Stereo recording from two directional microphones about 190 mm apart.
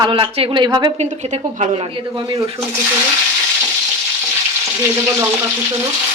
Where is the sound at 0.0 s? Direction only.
25° right (ahead or behind).